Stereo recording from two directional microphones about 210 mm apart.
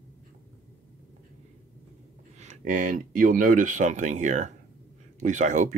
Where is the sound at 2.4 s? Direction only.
35° right (ahead or behind).